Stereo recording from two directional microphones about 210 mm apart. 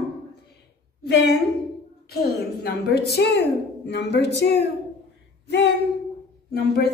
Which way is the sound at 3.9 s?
55° left (ahead or behind).